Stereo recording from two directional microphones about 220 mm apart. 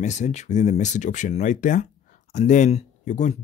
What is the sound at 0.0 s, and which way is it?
Speech, 30° left (ahead or behind).